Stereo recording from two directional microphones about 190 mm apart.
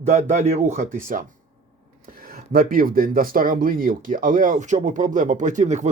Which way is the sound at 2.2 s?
50° right (ahead or behind).